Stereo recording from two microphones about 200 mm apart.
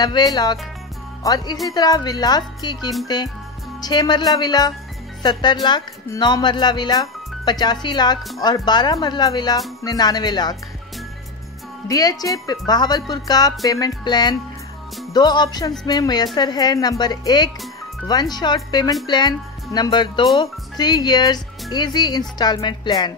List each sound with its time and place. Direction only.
0.0 s speech: 20° left (ahead or behind)
11.9 s speech: 20° left (ahead or behind)